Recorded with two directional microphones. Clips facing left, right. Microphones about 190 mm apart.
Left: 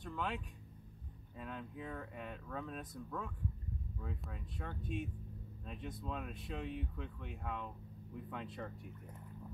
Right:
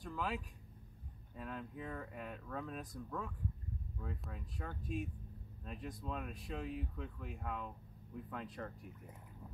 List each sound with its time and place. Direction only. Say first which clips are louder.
0.0 s speech: even; centre (ahead or behind)